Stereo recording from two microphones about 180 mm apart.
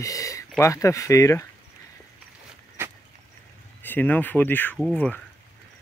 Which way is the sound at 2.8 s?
10° right (ahead or behind).